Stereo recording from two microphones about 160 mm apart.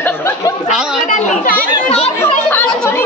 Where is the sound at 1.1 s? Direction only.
50° left (ahead or behind).